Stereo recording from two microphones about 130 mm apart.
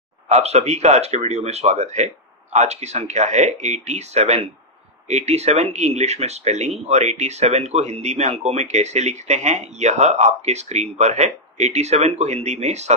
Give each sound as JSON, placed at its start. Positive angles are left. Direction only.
{"t": 0.3, "sound": "speech", "side_deg": -55}